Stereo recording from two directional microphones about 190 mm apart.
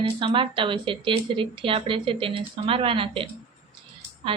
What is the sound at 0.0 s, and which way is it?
A woman's voice, 25° right (ahead or behind).